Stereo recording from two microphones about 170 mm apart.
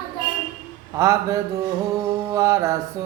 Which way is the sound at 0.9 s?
20° right (ahead or behind).